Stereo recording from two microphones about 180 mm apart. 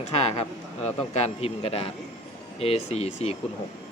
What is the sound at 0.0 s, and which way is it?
Speech, 35° left (ahead or behind).